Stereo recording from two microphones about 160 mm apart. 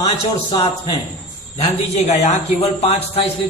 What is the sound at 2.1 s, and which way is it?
Speech, 40° left (ahead or behind).